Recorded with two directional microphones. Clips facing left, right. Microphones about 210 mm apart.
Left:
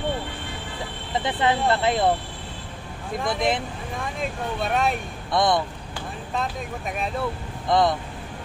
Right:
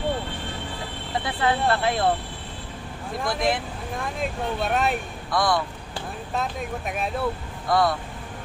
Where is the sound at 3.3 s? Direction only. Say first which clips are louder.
Even; 20° left (ahead or behind).